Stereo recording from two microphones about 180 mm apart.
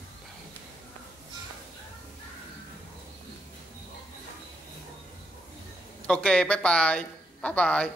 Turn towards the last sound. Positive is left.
turn(degrees=5)  # may be behind; listen again after turning